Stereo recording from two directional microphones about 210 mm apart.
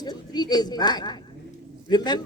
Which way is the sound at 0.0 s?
20° left (ahead or behind).